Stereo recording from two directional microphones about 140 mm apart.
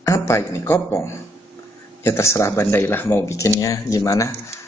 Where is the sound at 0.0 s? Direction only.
20° left (ahead or behind).